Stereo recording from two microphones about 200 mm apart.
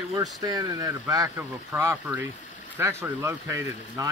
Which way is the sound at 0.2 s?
20° right (ahead or behind).